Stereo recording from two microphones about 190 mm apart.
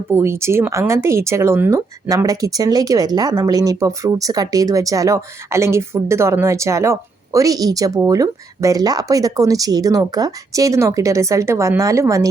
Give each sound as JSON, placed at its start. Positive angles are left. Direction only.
{"t": 0.1, "sound": "speech", "side_deg": -15}